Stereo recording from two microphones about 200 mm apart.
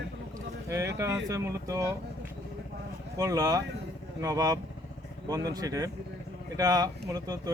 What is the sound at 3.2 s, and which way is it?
Speech, 15° right (ahead or behind).